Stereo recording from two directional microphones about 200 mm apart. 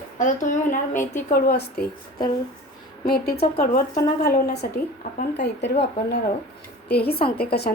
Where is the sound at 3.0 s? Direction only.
50° left (ahead or behind).